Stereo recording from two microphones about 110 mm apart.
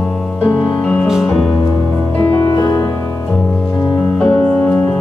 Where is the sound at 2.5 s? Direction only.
30° left (ahead or behind).